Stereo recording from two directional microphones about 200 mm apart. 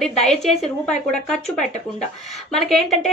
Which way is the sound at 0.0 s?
Centre (ahead or behind).